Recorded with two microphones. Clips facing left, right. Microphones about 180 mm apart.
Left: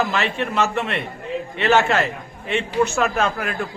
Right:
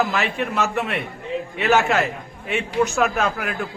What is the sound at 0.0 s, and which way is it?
A man's voice, centre (ahead or behind).